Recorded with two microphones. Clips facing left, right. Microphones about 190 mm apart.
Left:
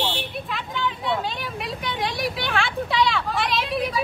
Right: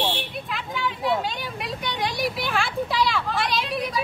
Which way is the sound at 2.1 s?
Centre (ahead or behind).